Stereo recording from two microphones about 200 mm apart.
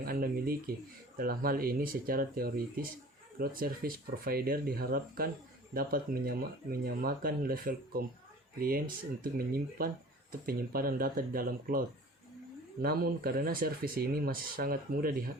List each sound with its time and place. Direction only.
0.0 s speech: 45° right (ahead or behind)
12.8 s speech: 50° right (ahead or behind)